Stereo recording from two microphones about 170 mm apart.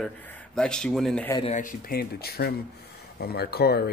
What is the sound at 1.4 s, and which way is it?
Speech, 50° left (ahead or behind).